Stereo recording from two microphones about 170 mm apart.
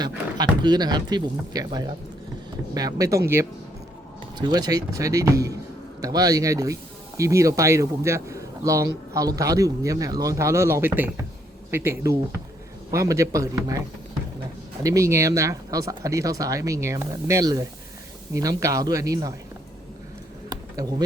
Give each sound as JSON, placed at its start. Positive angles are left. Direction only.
{"t": 0.0, "sound": "speech", "side_deg": -25}
{"t": 14.8, "sound": "speech", "side_deg": -20}